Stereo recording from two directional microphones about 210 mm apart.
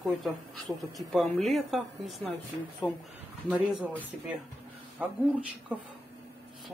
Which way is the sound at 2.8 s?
20° left (ahead or behind).